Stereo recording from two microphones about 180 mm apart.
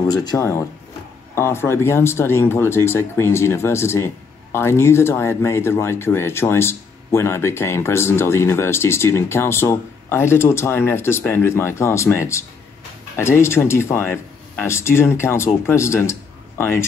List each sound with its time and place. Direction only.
0.1 s speech: 20° left (ahead or behind)